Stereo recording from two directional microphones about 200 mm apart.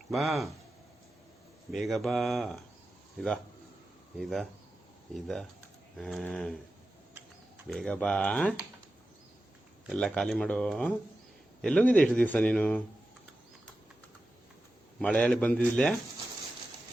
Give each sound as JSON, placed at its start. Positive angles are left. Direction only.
{"t": 0.1, "sound": "speech", "side_deg": 0}
{"t": 1.7, "sound": "speech", "side_deg": 0}
{"t": 7.7, "sound": "speech", "side_deg": 5}
{"t": 9.8, "sound": "a man's voice", "side_deg": 5}
{"t": 14.9, "sound": "speech", "side_deg": 5}